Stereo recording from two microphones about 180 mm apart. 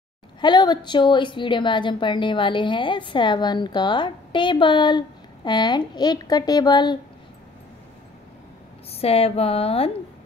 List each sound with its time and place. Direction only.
0.4 s a woman's voice: 25° left (ahead or behind)
8.9 s speech: 35° left (ahead or behind)